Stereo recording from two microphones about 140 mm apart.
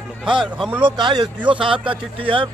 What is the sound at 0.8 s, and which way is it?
Speech, 35° right (ahead or behind).